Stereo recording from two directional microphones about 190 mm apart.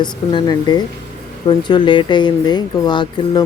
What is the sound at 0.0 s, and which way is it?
Speech, 25° left (ahead or behind).